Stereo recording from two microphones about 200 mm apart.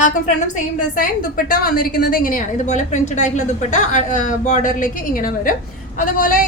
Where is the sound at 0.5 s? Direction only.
45° left (ahead or behind).